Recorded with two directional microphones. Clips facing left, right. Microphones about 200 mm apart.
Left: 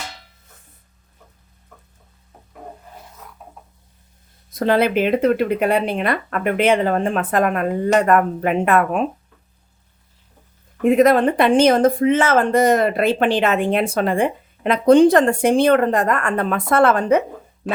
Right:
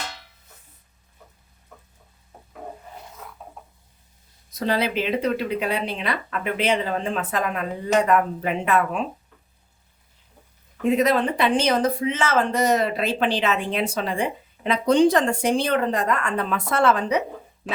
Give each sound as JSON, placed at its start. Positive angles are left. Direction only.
{"t": 4.5, "sound": "speech", "side_deg": 55}
{"t": 10.8, "sound": "speech", "side_deg": 50}
{"t": 17.6, "sound": "a sound", "side_deg": 45}